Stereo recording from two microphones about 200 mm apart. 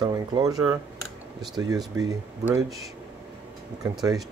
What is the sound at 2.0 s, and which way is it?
Speech, 15° right (ahead or behind).